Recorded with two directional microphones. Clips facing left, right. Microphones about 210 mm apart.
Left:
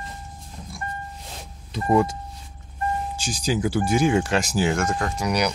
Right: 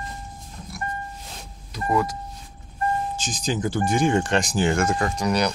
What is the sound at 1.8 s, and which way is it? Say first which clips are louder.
Speech: left 3 dB; 25° left (ahead or behind).